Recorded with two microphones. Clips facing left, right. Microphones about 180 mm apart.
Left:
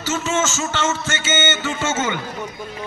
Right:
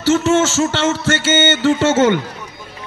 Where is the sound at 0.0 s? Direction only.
60° right (ahead or behind).